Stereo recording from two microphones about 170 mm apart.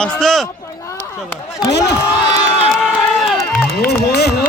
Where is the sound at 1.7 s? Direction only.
85° left.